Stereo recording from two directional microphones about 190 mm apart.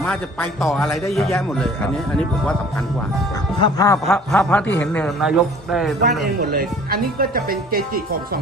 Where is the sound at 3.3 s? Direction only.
20° left (ahead or behind).